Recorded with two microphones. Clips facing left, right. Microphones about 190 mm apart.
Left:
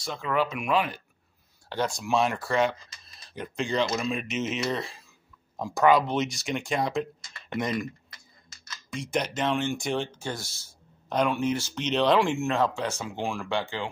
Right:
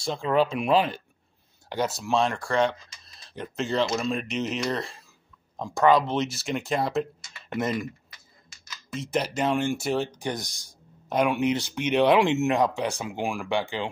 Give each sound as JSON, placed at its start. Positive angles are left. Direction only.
{"t": 0.0, "sound": "speech", "side_deg": -30}
{"t": 1.7, "sound": "speech", "side_deg": -10}